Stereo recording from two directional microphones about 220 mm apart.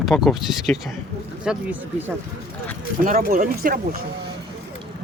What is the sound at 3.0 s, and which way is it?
Speech, 40° right (ahead or behind).